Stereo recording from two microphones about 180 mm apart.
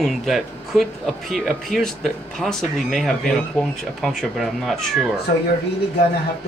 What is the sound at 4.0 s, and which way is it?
Speech, centre (ahead or behind).